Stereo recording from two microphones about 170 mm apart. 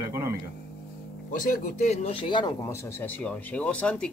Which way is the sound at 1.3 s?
50° left (ahead or behind).